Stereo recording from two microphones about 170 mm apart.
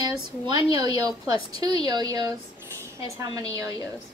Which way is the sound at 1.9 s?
25° right (ahead or behind).